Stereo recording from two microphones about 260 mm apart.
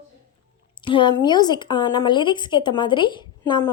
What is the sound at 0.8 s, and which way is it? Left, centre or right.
A woman's voice, centre.